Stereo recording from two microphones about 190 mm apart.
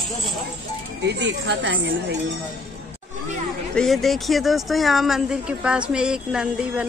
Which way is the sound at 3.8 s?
Centre (ahead or behind).